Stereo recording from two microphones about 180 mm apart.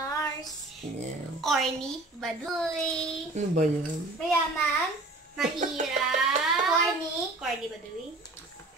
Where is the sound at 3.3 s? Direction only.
40° right (ahead or behind).